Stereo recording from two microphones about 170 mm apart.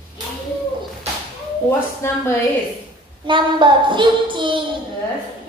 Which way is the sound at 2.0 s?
15° left (ahead or behind).